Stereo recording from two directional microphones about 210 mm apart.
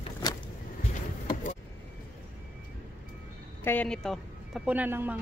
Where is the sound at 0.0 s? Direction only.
20° left (ahead or behind).